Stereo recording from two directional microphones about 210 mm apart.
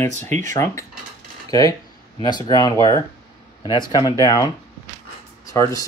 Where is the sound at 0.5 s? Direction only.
15° left (ahead or behind).